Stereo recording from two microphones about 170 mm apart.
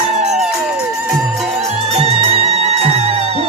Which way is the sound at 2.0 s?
40° right (ahead or behind).